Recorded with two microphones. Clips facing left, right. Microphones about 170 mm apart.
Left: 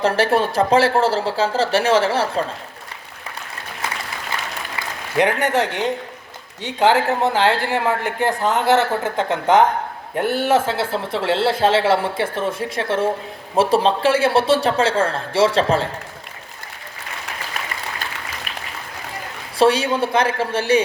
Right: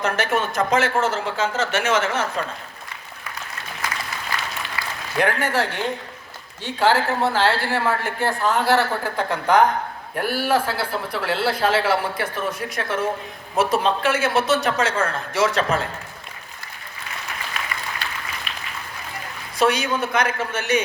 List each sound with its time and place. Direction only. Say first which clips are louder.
0.0 s speech: left 5 dB; 30° left (ahead or behind)
4.3 s applause: left 1 dB; 25° left (ahead or behind)
4.8 s speech: left 4 dB; 20° left (ahead or behind)
19.5 s speech: left 4 dB; 30° left (ahead or behind)